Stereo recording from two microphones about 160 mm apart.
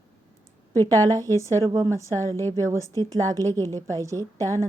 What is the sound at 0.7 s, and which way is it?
Speech, 15° left (ahead or behind).